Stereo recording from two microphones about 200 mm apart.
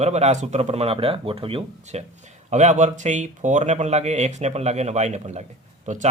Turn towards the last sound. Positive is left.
turn(degrees=-40)  # may be behind; listen again after turning